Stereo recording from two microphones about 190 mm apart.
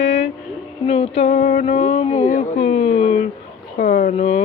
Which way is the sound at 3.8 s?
45° left (ahead or behind).